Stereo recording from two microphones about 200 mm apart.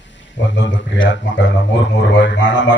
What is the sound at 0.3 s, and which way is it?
Speech, 65° left (ahead or behind).